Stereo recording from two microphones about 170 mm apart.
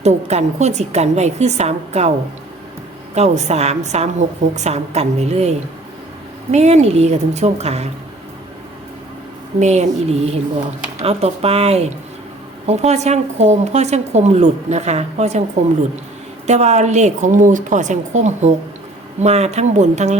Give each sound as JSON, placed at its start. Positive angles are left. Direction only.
{"t": 0.0, "sound": "a woman's voice", "side_deg": -40}
{"t": 3.2, "sound": "a woman's voice", "side_deg": -40}
{"t": 9.6, "sound": "a woman's voice", "side_deg": -45}
{"t": 16.5, "sound": "a woman's voice", "side_deg": -40}